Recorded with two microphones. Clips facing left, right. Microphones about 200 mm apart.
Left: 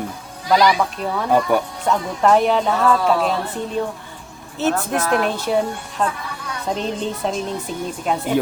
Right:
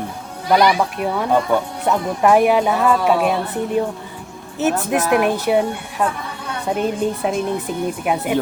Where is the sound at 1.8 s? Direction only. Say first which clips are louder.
Right 2 dB; 10° right (ahead or behind).